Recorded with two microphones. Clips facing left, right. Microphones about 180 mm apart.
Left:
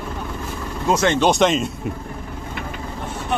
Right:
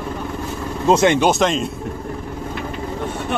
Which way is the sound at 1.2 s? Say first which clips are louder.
Even; centre (ahead or behind).